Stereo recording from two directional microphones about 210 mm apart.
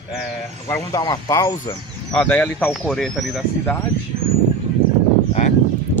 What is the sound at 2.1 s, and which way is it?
Speech, 5° left (ahead or behind).